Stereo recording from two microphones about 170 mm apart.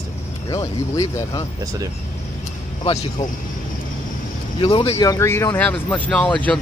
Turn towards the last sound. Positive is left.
turn(degrees=5)  # may be behind; listen again after turning